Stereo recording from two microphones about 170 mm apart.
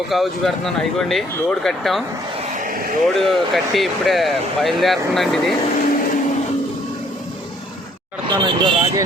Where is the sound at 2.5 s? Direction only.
50° right (ahead or behind).